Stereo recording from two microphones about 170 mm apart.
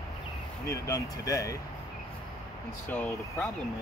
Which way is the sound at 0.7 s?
20° left (ahead or behind).